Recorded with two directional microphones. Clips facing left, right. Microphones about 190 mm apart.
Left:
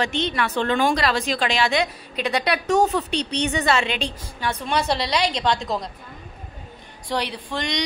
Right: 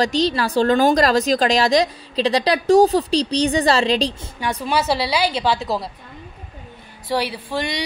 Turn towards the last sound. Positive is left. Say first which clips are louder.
# right 2 dB
turn(degrees=-5)  # may be behind; listen again after turning